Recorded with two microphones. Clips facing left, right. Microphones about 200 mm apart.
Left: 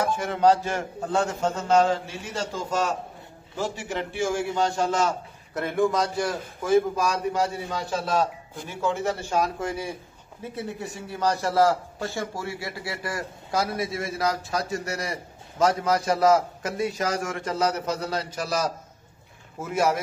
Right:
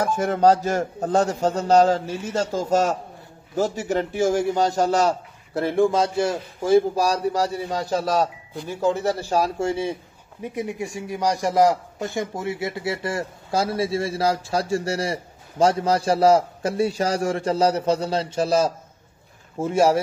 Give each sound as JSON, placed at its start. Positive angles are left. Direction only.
{"t": 0.0, "sound": "a man's voice", "side_deg": -45}
{"t": 10.4, "sound": "a man's voice", "side_deg": -15}